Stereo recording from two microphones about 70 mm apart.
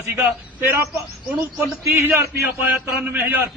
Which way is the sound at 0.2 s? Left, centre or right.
Right.